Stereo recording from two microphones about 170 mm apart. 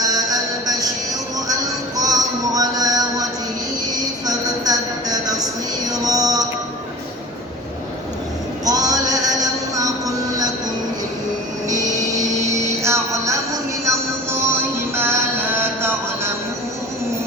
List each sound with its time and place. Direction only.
0.1 s music: 20° right (ahead or behind)
2.0 s music: 20° right (ahead or behind)
4.3 s a sound: 20° right (ahead or behind)
5.9 s music: 20° right (ahead or behind)
8.6 s a sound: 20° right (ahead or behind)
9.7 s train: 20° right (ahead or behind)
11.7 s music: 20° right (ahead or behind)
13.8 s synthetic singing: 15° right (ahead or behind)